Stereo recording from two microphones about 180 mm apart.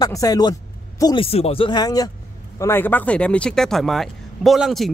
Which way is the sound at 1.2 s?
35° left (ahead or behind).